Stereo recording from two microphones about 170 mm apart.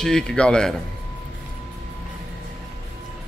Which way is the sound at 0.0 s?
5° left (ahead or behind).